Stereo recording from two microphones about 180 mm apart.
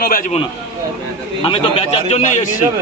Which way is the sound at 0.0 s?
50° left (ahead or behind).